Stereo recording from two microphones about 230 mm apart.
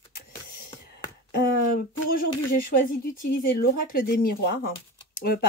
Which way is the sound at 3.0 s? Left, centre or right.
Left.